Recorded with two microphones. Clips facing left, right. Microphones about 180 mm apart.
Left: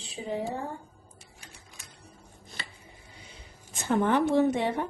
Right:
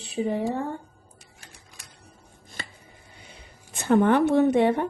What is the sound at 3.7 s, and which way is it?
Speech, 65° right (ahead or behind).